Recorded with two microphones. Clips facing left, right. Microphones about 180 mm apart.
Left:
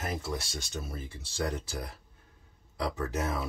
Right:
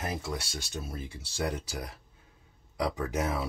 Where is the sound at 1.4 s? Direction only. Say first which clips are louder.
Right 1 dB; 15° right (ahead or behind).